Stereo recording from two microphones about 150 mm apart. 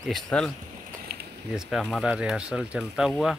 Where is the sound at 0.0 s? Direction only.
5° left (ahead or behind).